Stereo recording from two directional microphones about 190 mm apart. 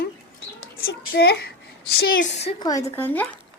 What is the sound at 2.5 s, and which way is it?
Speech, 20° left (ahead or behind).